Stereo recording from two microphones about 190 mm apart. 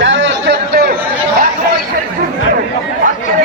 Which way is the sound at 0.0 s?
75° right (ahead or behind).